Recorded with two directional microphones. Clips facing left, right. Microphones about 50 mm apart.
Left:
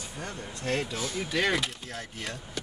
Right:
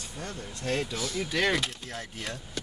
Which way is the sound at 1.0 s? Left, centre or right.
Left.